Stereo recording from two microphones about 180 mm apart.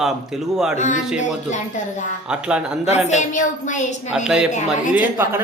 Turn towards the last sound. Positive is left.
turn(degrees=-10)  # may be behind; listen again after turning